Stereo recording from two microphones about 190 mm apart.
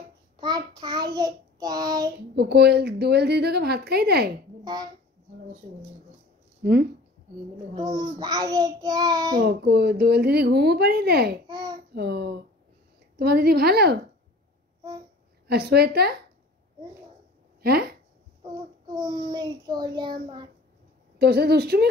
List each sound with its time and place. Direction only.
0.4 s child singing: 20° right (ahead or behind)
2.3 s speech: 60° right (ahead or behind)
6.6 s speech: 55° right (ahead or behind)
7.8 s child singing: 20° right (ahead or behind)
9.4 s speech: 60° right (ahead or behind)
11.4 s babbling: 20° right (ahead or behind)
11.9 s speech: 60° right (ahead or behind)
15.4 s speech: 55° right (ahead or behind)
17.6 s speech: 55° right (ahead or behind)
18.4 s child singing: 20° right (ahead or behind)
21.2 s speech: 55° right (ahead or behind)